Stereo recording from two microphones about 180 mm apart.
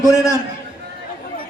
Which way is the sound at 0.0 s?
20° left (ahead or behind).